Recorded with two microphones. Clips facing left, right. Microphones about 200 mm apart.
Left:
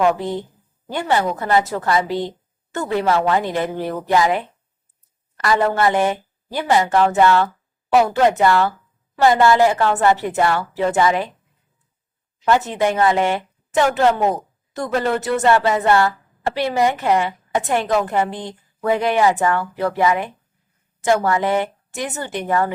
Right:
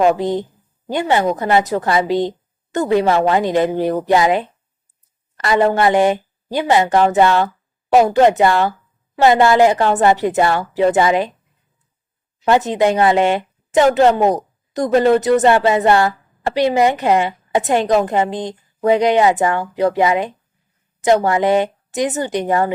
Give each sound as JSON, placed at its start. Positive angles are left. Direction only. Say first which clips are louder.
{"t": 0.2, "sound": "a woman's voice", "louder": "right 5 dB", "side_deg": -15}
{"t": 12.5, "sound": "a woman's voice", "louder": "right 3 dB", "side_deg": -20}